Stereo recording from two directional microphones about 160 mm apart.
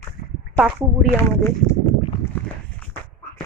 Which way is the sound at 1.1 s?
15° left (ahead or behind).